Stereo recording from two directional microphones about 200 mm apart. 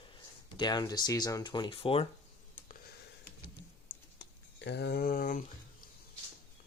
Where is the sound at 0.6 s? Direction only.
20° left (ahead or behind).